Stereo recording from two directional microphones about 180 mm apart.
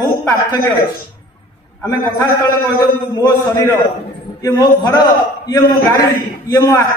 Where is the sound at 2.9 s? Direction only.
15° left (ahead or behind).